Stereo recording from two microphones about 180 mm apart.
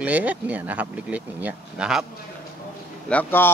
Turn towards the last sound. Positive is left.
turn(degrees=10)  # may be behind; listen again after turning